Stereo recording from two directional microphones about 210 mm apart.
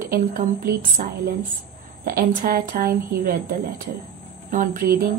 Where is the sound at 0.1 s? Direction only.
40° right (ahead or behind).